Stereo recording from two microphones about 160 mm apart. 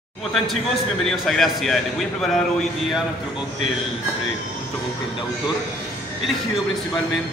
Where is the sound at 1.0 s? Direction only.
Centre (ahead or behind).